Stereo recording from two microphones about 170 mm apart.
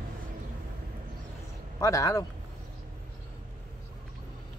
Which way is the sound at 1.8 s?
20° left (ahead or behind).